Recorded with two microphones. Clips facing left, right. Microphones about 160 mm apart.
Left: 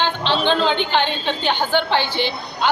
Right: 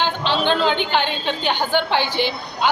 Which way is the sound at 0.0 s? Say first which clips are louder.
Left 1 dB; 10° right (ahead or behind).